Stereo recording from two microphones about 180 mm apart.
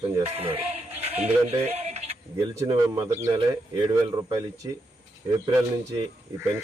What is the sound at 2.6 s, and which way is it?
Speech, 25° right (ahead or behind).